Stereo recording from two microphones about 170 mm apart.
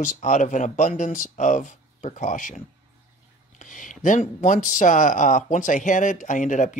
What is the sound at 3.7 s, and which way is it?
Speech, 50° left (ahead or behind).